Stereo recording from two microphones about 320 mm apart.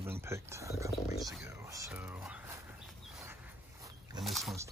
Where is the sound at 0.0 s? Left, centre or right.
Centre.